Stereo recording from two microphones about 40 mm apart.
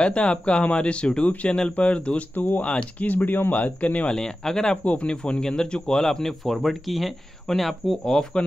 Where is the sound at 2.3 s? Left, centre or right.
Left.